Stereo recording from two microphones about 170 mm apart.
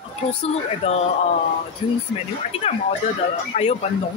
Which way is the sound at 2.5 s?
35° left (ahead or behind).